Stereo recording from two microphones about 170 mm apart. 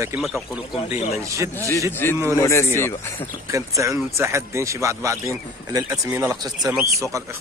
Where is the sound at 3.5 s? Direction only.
20° right (ahead or behind).